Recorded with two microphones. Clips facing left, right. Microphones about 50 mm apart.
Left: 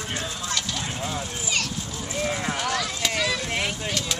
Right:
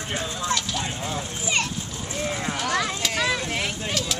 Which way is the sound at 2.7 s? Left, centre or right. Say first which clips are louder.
Right 3 dB; right.